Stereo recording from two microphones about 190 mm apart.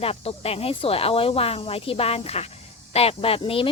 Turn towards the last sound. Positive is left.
turn(degrees=30)  # may be behind; listen again after turning